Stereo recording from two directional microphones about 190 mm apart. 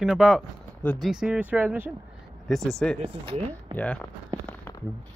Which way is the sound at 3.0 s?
25° right (ahead or behind).